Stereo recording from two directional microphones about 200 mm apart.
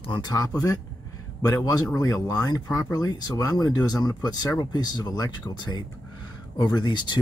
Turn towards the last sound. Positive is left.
turn(degrees=20)  # may be behind; listen again after turning